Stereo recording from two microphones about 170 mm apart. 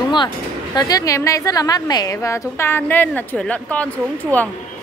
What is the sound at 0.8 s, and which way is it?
A woman's voice, 20° left (ahead or behind).